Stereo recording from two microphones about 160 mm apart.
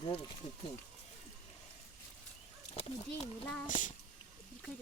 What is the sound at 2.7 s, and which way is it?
Speech, 40° left (ahead or behind).